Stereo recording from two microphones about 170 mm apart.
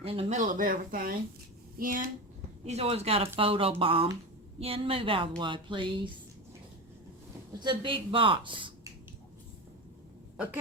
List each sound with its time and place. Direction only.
0.0 s speech: 35° right (ahead or behind)
0.3 s speech: 50° right (ahead or behind)
2.6 s a woman's voice: 35° right (ahead or behind)
7.6 s a woman's voice: 30° right (ahead or behind)
10.3 s speech: 10° right (ahead or behind)